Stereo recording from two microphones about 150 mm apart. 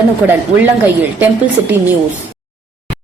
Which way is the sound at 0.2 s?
10° right (ahead or behind).